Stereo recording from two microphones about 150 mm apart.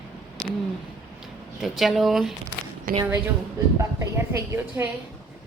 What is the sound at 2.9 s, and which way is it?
Speech, 70° right (ahead or behind).